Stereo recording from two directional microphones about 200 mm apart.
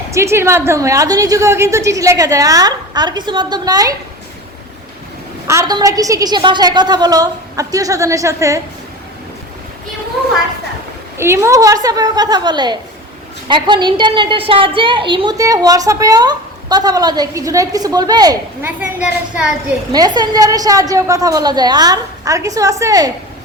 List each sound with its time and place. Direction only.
0.1 s a woman's voice: 15° right (ahead or behind)
5.5 s a woman's voice: 15° right (ahead or behind)
11.2 s a woman's voice: 15° right (ahead or behind)
19.9 s a woman's voice: 20° right (ahead or behind)